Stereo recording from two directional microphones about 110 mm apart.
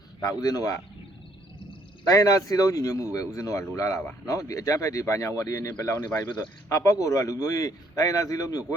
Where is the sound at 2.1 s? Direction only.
30° left (ahead or behind).